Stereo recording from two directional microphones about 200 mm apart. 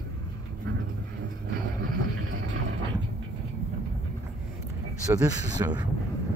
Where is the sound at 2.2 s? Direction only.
75° right (ahead or behind).